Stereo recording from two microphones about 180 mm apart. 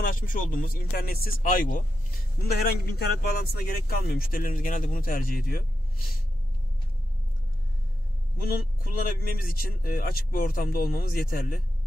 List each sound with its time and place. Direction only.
0.0 s speech: 50° left (ahead or behind)
2.4 s speech: 60° left (ahead or behind)
8.4 s speech: 55° left (ahead or behind)